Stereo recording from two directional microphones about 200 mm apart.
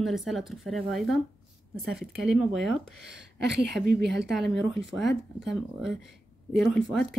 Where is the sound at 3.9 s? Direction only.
Centre (ahead or behind).